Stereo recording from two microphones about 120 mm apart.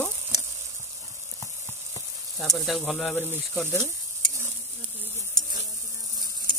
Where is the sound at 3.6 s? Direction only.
20° right (ahead or behind).